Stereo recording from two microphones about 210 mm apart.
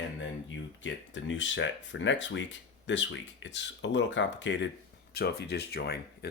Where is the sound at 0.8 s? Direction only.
65° left (ahead or behind).